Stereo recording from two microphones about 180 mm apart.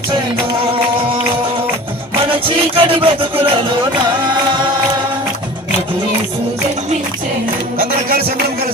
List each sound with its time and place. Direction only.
2.7 s music: 30° right (ahead or behind)